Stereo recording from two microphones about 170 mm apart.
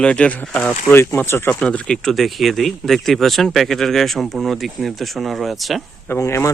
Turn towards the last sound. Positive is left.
turn(degrees=15)  # may be behind; listen again after turning